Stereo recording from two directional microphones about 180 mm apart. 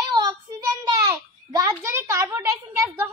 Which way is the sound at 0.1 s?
25° right (ahead or behind).